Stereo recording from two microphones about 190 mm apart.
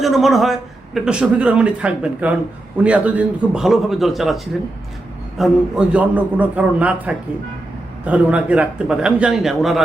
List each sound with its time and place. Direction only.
0.0 s a man's voice: centre (ahead or behind)
5.4 s a man's voice: 5° right (ahead or behind)